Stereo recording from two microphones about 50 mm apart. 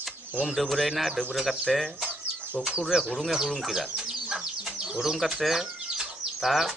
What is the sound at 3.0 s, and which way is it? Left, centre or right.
Speech, centre.